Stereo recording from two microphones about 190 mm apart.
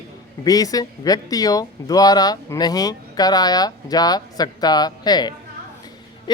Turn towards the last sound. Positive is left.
turn(degrees=20)  # may be behind; listen again after turning